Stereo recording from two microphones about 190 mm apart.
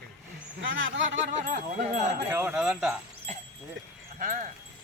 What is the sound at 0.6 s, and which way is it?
Speech, 85° right.